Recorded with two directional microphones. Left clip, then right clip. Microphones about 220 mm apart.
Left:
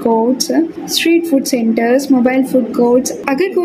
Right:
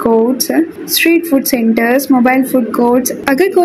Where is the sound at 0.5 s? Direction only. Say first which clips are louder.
Right 1 dB; 10° right (ahead or behind).